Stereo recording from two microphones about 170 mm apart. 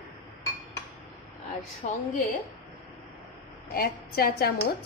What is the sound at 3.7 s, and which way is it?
Speech, 60° left (ahead or behind).